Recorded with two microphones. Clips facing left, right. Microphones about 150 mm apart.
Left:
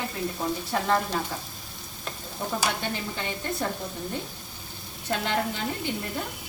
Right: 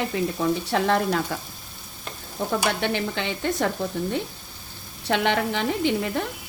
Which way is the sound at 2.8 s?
80° right.